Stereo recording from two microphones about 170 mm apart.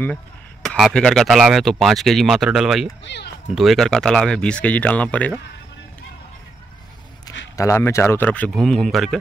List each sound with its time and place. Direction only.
0.0 s speech: 5° left (ahead or behind)
3.1 s speech: 90° left
3.5 s speech: centre (ahead or behind)
7.5 s speech: 15° left (ahead or behind); by 9.2 s centre (ahead or behind)